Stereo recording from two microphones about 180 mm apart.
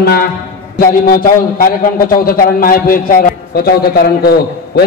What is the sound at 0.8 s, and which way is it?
A man's voice, 50° left (ahead or behind).